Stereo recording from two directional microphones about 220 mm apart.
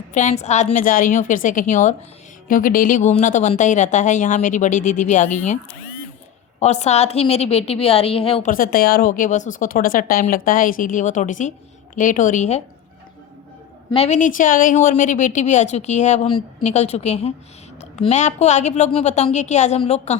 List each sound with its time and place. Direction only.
0.1 s a woman's voice: 35° left (ahead or behind)
6.6 s a woman's voice: 30° left (ahead or behind)
8.4 s a woman's voice: 40° left (ahead or behind)
13.9 s a woman's voice: 30° left (ahead or behind)